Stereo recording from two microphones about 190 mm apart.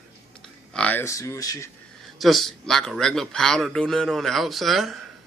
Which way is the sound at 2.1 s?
Centre (ahead or behind).